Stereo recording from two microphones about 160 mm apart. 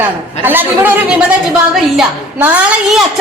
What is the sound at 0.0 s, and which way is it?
Speech, 10° right (ahead or behind).